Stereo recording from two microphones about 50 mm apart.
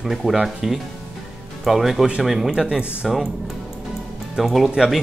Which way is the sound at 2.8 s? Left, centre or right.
Right.